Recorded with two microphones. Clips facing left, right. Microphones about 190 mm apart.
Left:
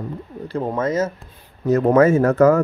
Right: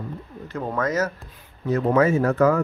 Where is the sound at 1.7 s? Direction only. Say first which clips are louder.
Left 5 dB; 45° left (ahead or behind).